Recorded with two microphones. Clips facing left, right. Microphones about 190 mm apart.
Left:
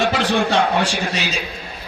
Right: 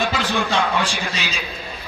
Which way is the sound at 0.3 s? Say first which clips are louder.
Left 3 dB; 45° left (ahead or behind).